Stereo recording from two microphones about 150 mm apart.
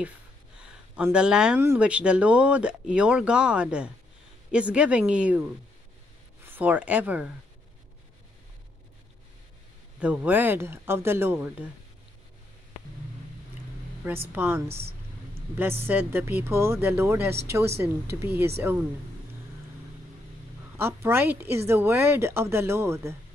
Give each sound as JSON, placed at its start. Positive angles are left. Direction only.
{"t": 0.6, "sound": "a sound", "side_deg": -5}
{"t": 1.6, "sound": "speech", "side_deg": -10}
{"t": 9.9, "sound": "speech", "side_deg": -10}
{"t": 14.3, "sound": "speech", "side_deg": -10}
{"t": 14.7, "sound": "a sound", "side_deg": -40}
{"t": 15.9, "sound": "speech", "side_deg": -15}
{"t": 20.7, "sound": "speech", "side_deg": -15}